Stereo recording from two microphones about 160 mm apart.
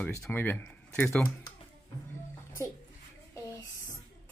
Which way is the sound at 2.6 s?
15° left (ahead or behind).